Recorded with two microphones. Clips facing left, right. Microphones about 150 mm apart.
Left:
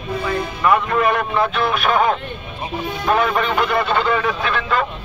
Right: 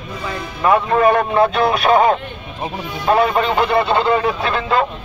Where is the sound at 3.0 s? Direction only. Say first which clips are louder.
Right 3 dB; 30° right (ahead or behind).